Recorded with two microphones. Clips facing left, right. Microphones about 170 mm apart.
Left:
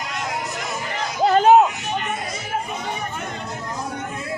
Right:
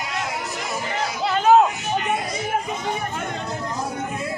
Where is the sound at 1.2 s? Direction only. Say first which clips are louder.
Left 8 dB; 40° left (ahead or behind).